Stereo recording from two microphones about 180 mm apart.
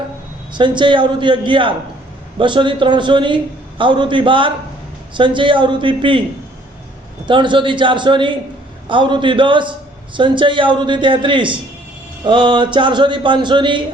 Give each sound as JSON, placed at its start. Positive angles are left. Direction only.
{"t": 0.5, "sound": "a man's voice", "side_deg": -25}
{"t": 7.3, "sound": "a man's voice", "side_deg": -25}